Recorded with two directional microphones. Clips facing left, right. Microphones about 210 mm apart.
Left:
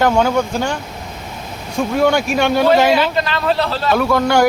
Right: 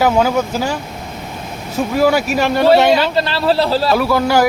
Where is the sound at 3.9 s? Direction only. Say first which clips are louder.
Left 3 dB; 5° right (ahead or behind).